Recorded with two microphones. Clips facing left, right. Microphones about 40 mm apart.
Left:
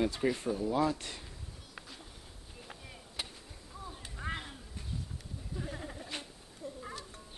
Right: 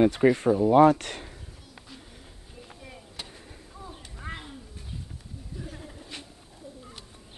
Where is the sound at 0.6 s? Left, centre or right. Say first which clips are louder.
Right 13 dB; right.